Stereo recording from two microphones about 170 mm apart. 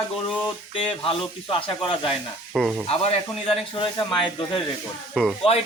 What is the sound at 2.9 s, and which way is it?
Speech, 35° left (ahead or behind).